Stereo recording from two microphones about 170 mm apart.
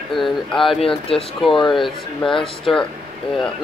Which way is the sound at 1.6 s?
Centre (ahead or behind).